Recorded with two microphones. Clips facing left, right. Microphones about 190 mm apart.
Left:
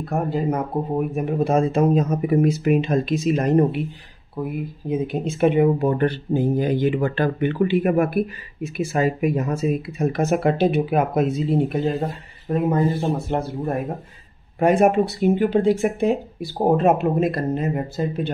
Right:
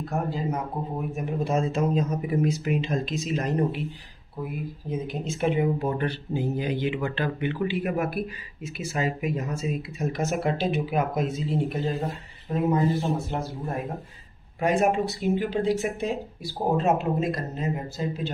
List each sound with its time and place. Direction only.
0.0 s speech: 55° left (ahead or behind)
4.8 s speech: 60° left (ahead or behind)
13.3 s speech: 60° left (ahead or behind)